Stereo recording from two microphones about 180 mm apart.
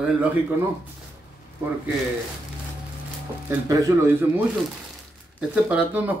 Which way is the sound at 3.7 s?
15° right (ahead or behind).